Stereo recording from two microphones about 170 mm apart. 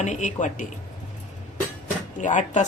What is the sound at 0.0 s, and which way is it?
Speech, 45° left (ahead or behind).